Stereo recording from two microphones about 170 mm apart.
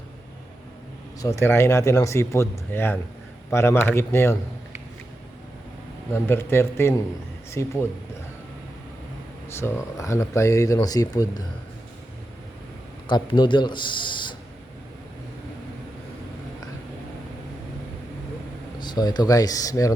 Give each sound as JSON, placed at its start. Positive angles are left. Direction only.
{"t": 1.2, "sound": "speech", "side_deg": 20}
{"t": 6.1, "sound": "speech", "side_deg": 15}
{"t": 9.5, "sound": "speech", "side_deg": 15}
{"t": 13.1, "sound": "speech", "side_deg": 25}
{"t": 18.8, "sound": "speech", "side_deg": 25}